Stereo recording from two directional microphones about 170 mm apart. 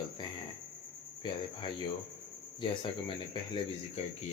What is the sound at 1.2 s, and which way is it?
Speech, 25° left (ahead or behind).